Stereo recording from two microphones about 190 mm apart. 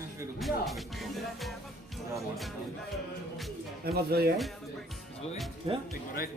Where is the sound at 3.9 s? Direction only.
55° right (ahead or behind).